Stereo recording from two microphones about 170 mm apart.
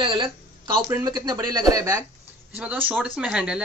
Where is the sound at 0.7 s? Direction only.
20° right (ahead or behind).